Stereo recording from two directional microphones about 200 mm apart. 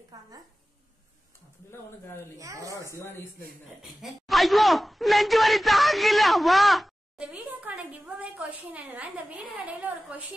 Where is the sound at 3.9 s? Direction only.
Centre (ahead or behind).